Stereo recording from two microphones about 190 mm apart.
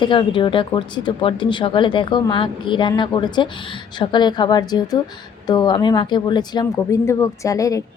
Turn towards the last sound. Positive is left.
turn(degrees=15)  # may be behind; listen again after turning